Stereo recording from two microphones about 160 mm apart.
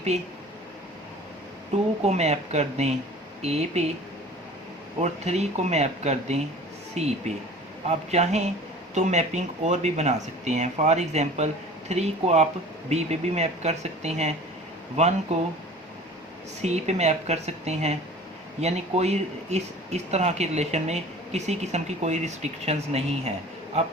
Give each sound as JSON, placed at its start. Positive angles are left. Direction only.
{"t": 2.0, "sound": "speech", "side_deg": -45}
{"t": 4.9, "sound": "speech", "side_deg": -45}
{"t": 16.6, "sound": "speech", "side_deg": -45}